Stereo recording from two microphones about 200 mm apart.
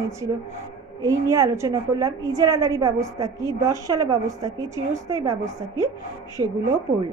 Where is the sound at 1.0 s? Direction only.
15° right (ahead or behind).